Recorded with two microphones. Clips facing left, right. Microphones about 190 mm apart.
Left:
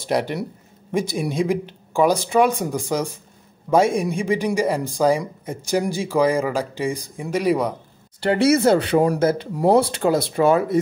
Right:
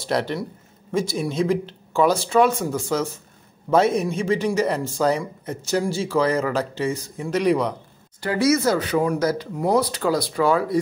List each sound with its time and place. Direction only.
0.0 s speech: 15° left (ahead or behind)
8.5 s speech: 30° left (ahead or behind)